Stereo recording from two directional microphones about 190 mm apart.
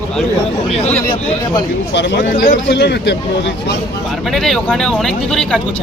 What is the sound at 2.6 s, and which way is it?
Speech, 60° left (ahead or behind).